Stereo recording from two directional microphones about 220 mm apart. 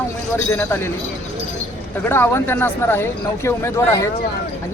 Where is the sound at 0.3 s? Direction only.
10° left (ahead or behind).